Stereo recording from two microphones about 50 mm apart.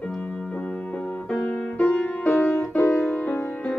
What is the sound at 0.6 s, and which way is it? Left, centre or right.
Music, left.